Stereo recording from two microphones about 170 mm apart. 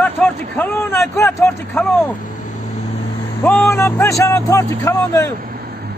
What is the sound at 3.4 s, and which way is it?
A man's voice, 10° left (ahead or behind).